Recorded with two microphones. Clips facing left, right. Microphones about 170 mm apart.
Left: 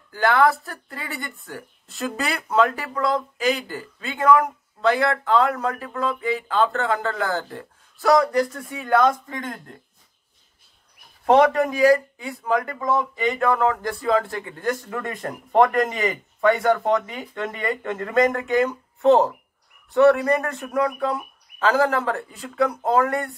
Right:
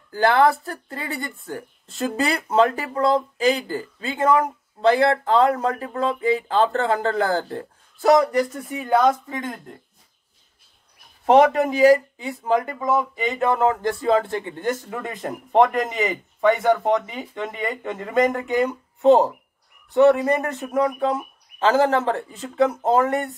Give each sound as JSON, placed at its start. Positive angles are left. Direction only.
{"t": 0.1, "sound": "speech", "side_deg": -30}
{"t": 11.2, "sound": "speech", "side_deg": -20}
{"t": 12.8, "sound": "speech", "side_deg": -10}
{"t": 13.4, "sound": "speech", "side_deg": -25}